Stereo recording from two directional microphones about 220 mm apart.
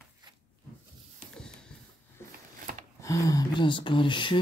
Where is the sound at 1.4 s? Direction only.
5° left (ahead or behind).